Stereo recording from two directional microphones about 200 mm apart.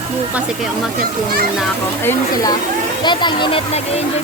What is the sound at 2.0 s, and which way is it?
Speech, 15° left (ahead or behind).